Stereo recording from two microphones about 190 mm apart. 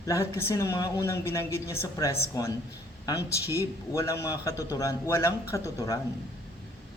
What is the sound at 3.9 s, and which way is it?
Speech, 15° left (ahead or behind).